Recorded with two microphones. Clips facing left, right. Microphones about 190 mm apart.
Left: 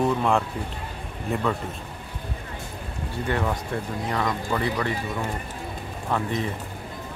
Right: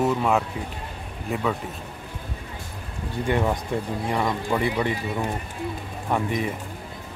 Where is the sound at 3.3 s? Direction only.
15° right (ahead or behind).